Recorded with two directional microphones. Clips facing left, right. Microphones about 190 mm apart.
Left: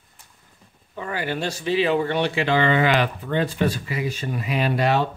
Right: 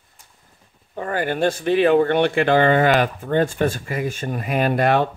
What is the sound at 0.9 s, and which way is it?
Speech, 50° right (ahead or behind).